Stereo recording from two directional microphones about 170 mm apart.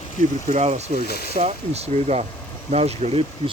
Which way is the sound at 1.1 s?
65° left (ahead or behind).